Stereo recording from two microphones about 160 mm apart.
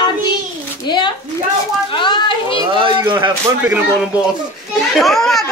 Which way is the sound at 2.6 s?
30° right (ahead or behind).